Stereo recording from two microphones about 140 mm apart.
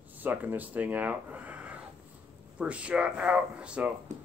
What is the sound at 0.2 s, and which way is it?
Speech, 10° right (ahead or behind).